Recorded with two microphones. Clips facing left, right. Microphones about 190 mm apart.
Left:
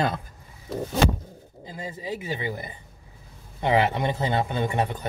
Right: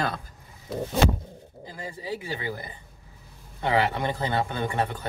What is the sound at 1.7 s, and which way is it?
Speech, 20° left (ahead or behind).